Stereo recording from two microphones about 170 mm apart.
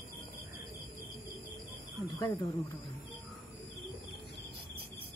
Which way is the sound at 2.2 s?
20° left (ahead or behind).